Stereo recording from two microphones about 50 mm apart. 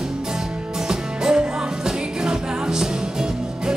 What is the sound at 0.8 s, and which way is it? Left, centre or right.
Music, centre.